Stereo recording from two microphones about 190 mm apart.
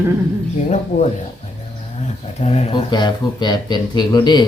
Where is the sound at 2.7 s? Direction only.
20° left (ahead or behind).